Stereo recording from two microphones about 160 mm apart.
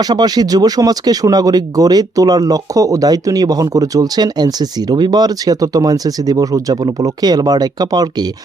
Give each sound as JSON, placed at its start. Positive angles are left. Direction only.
{"t": 0.0, "sound": "speech", "side_deg": -25}